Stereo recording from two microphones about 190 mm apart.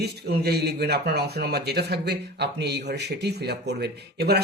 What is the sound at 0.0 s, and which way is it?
Speech, 55° right (ahead or behind).